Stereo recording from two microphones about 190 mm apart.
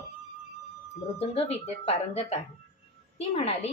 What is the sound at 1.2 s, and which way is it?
A woman's voice, 30° left (ahead or behind).